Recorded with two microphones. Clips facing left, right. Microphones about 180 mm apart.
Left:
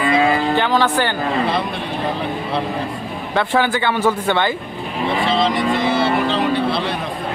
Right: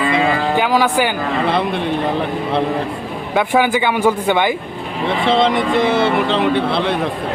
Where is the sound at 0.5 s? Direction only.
10° right (ahead or behind).